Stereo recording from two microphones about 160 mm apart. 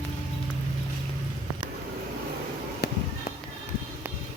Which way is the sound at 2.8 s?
90° left.